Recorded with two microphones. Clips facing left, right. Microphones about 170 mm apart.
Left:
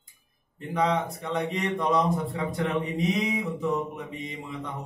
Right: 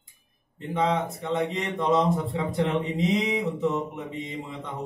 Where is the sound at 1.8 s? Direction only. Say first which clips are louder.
Right 3 dB; 25° right (ahead or behind).